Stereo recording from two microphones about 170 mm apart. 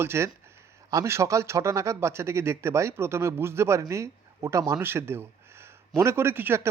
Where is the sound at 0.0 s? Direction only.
15° right (ahead or behind).